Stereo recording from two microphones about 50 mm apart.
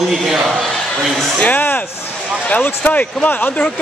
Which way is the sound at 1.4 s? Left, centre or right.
Left.